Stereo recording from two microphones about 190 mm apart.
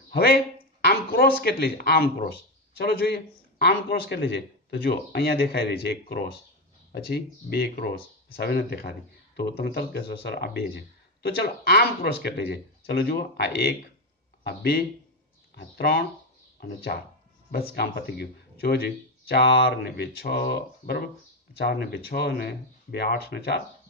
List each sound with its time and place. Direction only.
0.1 s speech: 55° left (ahead or behind)